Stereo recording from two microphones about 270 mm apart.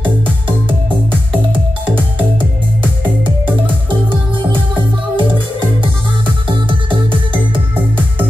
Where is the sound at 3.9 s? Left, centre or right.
Centre.